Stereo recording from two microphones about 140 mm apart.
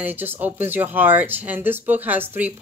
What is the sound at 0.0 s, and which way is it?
Speech, 15° right (ahead or behind).